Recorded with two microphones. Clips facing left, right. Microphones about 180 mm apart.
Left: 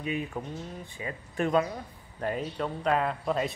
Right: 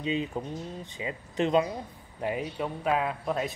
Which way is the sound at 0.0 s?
20° right (ahead or behind).